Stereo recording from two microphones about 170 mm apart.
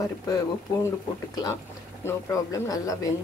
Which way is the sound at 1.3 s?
20° left (ahead or behind).